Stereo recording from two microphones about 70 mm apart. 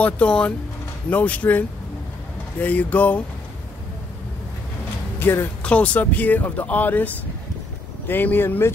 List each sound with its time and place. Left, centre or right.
0.0 s speech: centre
2.6 s speech: left
5.2 s speech: left
5.6 s speech: centre
8.1 s speech: left